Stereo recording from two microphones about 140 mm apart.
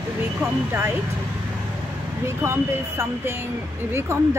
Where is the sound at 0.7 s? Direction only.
15° right (ahead or behind).